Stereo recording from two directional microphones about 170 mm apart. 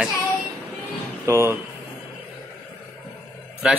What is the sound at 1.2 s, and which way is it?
Speech, 15° right (ahead or behind).